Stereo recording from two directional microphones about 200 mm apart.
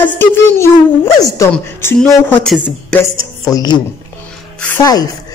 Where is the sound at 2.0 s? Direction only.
5° left (ahead or behind).